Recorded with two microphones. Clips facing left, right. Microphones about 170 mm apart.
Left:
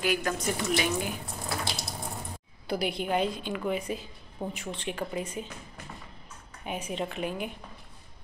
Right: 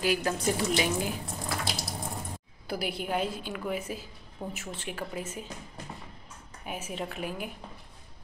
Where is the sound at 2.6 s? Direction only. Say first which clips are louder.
Left 3 dB; 5° right (ahead or behind).